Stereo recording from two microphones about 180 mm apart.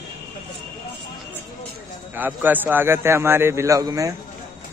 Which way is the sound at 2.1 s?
10° right (ahead or behind).